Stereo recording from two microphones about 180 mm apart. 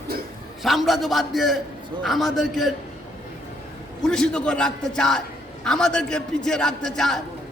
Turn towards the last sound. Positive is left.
turn(degrees=0)  # may be behind; listen again after turning